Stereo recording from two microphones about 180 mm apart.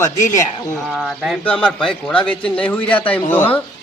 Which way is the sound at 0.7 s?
Centre (ahead or behind).